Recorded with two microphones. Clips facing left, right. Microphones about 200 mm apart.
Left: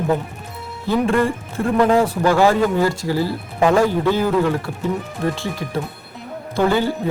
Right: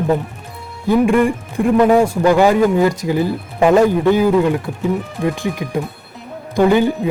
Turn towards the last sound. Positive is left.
turn(degrees=-15)  # may be behind; listen again after turning